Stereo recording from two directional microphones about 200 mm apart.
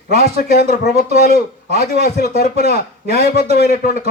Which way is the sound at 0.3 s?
45° left (ahead or behind).